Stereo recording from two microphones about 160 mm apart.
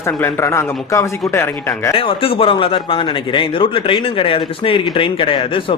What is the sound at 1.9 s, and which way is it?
Speech, 35° left (ahead or behind).